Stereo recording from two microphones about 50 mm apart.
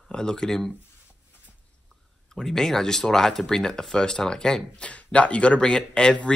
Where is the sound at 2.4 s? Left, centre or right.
Centre.